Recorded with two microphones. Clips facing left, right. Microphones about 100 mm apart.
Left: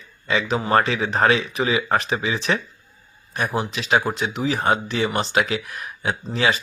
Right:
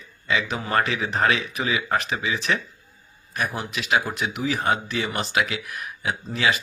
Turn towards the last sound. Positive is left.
turn(degrees=35)  # may be behind; listen again after turning